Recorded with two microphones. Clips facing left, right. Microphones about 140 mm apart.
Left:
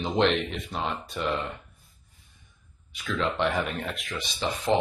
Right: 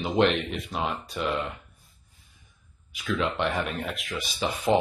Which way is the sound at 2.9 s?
Centre (ahead or behind).